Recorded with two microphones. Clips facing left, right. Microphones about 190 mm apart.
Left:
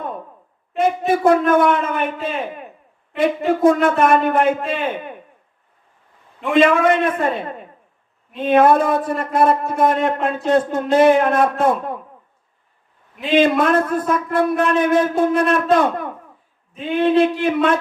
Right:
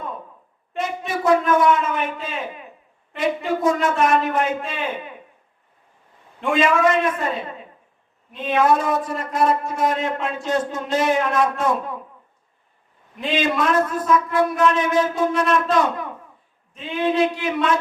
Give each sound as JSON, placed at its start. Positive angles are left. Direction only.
{"t": 0.8, "sound": "a man's voice", "side_deg": 55}
{"t": 6.6, "sound": "speech", "side_deg": 55}
{"t": 13.3, "sound": "speech", "side_deg": 55}